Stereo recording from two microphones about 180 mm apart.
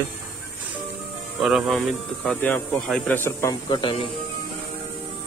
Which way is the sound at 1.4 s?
Centre (ahead or behind).